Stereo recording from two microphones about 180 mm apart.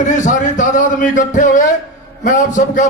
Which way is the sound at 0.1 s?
45° left (ahead or behind).